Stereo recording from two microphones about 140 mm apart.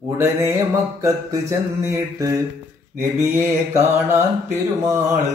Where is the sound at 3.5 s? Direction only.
20° right (ahead or behind).